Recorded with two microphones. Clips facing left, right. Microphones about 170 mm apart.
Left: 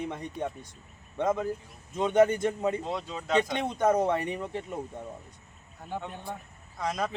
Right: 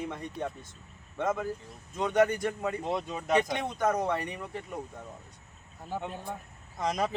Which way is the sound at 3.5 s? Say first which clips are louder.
Left 4 dB; 25° left (ahead or behind).